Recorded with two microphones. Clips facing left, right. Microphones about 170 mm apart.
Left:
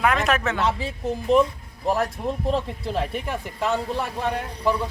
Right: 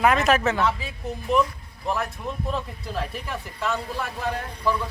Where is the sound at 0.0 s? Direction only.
Centre (ahead or behind).